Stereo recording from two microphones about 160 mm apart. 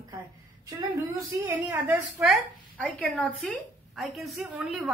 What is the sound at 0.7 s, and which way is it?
Speech, 25° right (ahead or behind).